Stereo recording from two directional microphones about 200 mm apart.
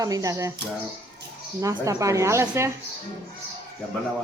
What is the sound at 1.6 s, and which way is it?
Speech, 15° right (ahead or behind).